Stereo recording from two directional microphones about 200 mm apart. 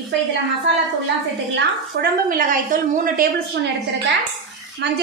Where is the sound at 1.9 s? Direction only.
55° right (ahead or behind).